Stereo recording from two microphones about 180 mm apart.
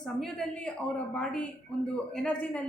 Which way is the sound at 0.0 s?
5° left (ahead or behind).